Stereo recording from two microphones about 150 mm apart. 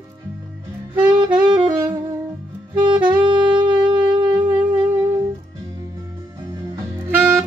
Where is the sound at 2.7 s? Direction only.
30° right (ahead or behind).